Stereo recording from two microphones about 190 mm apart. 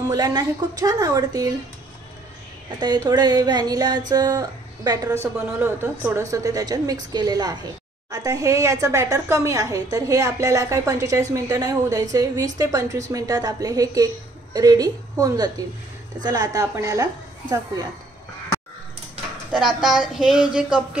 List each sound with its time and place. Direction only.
0.1 s a woman's voice: 20° right (ahead or behind)
2.8 s a woman's voice: 20° right (ahead or behind)
19.5 s a woman's voice: 5° right (ahead or behind)